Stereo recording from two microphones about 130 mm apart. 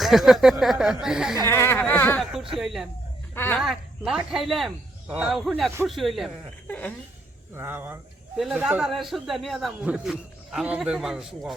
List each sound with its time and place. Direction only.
0.0 s speech: centre (ahead or behind)
1.5 s speech: 20° left (ahead or behind)
2.3 s speech: 5° right (ahead or behind)
3.3 s speech: 15° left (ahead or behind)
3.6 s speech: 5° right (ahead or behind)
6.7 s speech: 10° left (ahead or behind)
7.5 s speech: 20° right (ahead or behind)
8.4 s speech: 5° right (ahead or behind)